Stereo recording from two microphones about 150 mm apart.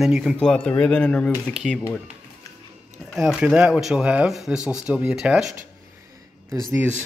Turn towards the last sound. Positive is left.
turn(degrees=-15)  # may be behind; listen again after turning